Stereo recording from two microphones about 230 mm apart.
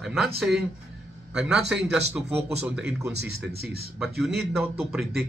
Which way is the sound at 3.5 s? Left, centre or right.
Right.